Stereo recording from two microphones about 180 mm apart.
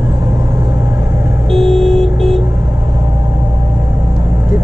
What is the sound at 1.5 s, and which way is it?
Vehicle, centre (ahead or behind).